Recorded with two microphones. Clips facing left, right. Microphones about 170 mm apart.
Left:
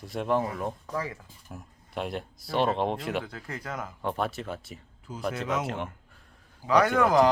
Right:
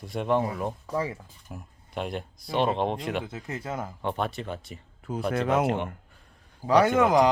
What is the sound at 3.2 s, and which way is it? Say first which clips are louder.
Speech: right 3 dB; 20° right (ahead or behind).